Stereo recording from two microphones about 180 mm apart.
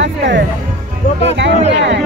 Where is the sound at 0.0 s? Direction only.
85° right.